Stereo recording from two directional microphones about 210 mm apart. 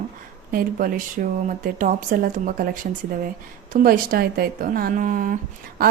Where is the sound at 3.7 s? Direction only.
45° right (ahead or behind).